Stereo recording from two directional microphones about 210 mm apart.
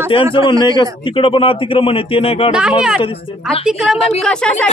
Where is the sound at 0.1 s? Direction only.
25° left (ahead or behind).